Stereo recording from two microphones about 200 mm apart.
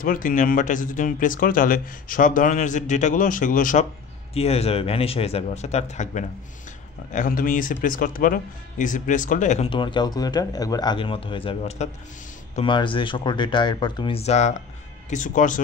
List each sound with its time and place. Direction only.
0.0 s speech: 45° left (ahead or behind)
4.3 s speech: 30° left (ahead or behind)